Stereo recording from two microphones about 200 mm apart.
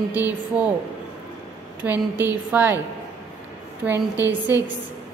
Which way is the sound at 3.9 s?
15° left (ahead or behind).